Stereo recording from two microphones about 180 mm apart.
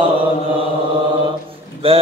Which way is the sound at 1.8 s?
30° right (ahead or behind).